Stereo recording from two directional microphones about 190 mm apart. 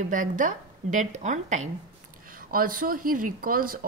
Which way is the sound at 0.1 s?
45° right (ahead or behind).